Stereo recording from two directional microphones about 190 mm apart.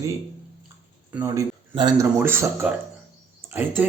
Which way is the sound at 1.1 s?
15° right (ahead or behind).